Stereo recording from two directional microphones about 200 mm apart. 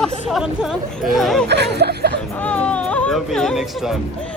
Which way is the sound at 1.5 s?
55° right (ahead or behind).